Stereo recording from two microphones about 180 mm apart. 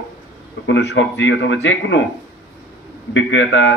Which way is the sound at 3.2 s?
90° left.